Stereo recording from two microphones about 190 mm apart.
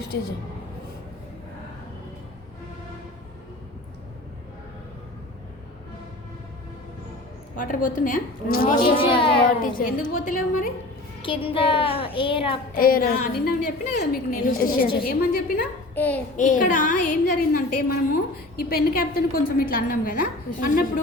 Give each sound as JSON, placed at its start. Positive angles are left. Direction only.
{"t": 0.1, "sound": "a woman's voice", "side_deg": 65}
{"t": 7.6, "sound": "a woman's voice", "side_deg": 45}
{"t": 9.0, "sound": "a woman's voice", "side_deg": 25}
{"t": 9.6, "sound": "a woman's voice", "side_deg": 45}
{"t": 11.2, "sound": "a woman's voice", "side_deg": 30}
{"t": 12.7, "sound": "a woman's voice", "side_deg": 50}
{"t": 16.0, "sound": "a sound", "side_deg": 10}
{"t": 16.4, "sound": "a woman's voice", "side_deg": 45}